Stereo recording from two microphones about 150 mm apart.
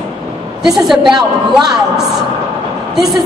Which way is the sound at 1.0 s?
30° right (ahead or behind).